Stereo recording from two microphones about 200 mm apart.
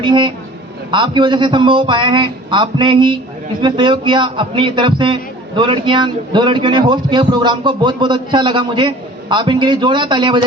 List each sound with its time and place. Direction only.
0.0 s a man's voice: 25° right (ahead or behind)